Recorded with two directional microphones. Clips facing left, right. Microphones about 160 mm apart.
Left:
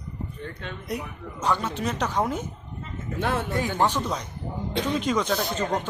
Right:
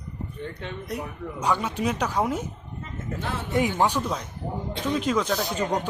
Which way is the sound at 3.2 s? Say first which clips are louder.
Left 7 dB; 60° left (ahead or behind).